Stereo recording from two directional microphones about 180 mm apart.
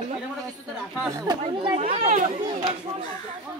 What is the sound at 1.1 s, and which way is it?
Chatter, 20° right (ahead or behind).